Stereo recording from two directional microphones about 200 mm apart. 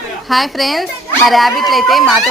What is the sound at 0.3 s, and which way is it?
Speech, centre (ahead or behind).